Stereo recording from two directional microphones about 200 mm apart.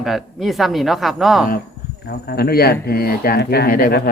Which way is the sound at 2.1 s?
55° left (ahead or behind).